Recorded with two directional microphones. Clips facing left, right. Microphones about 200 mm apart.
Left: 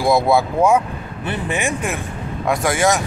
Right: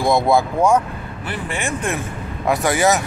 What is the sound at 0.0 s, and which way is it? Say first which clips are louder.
Speech: left 1 dB; 5° left (ahead or behind).